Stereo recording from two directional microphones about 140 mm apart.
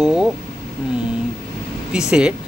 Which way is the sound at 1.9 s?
5° right (ahead or behind).